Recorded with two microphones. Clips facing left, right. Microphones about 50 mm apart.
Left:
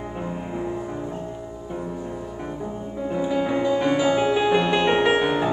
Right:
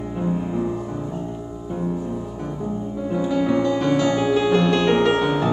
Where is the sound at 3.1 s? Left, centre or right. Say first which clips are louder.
Right 2 dB; centre.